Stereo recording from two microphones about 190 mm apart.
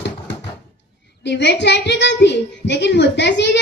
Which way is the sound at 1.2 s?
65° left (ahead or behind).